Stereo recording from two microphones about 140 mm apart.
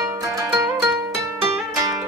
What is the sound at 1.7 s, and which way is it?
Music, 25° right (ahead or behind).